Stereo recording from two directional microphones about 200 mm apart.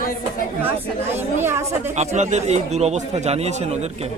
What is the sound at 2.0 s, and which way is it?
Speech, 35° right (ahead or behind).